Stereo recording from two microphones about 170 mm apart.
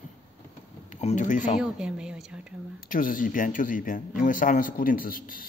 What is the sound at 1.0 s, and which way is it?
Speech, 45° left (ahead or behind).